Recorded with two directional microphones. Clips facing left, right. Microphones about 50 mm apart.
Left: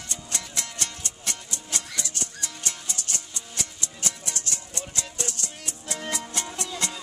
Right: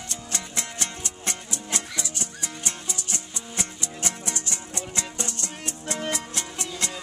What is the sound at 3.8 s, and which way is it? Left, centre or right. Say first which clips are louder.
Music: right 3 dB; right.